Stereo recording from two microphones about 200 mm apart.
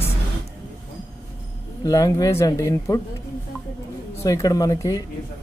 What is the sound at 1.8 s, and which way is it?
Speech, 20° left (ahead or behind).